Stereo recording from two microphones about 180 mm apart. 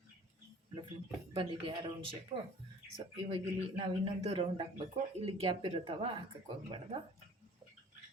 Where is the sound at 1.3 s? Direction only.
25° right (ahead or behind).